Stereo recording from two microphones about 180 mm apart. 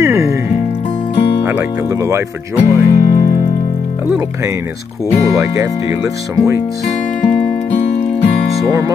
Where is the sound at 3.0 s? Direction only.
55° left (ahead or behind).